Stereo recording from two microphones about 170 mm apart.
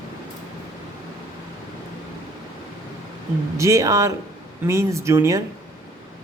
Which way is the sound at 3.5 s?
15° right (ahead or behind).